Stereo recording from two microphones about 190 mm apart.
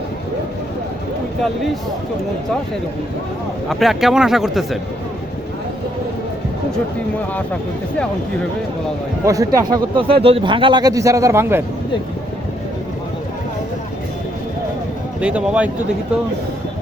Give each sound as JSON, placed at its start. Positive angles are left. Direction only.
{"t": 3.7, "sound": "speech", "side_deg": 0}
{"t": 9.2, "sound": "speech", "side_deg": -15}
{"t": 10.0, "sound": "speech", "side_deg": -30}
{"t": 15.2, "sound": "speech", "side_deg": -5}